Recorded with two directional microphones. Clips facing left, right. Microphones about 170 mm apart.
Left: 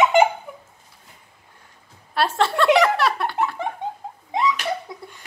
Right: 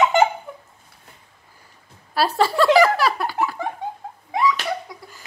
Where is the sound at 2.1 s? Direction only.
Centre (ahead or behind).